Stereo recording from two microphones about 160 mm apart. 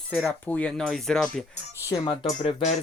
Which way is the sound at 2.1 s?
35° left (ahead or behind).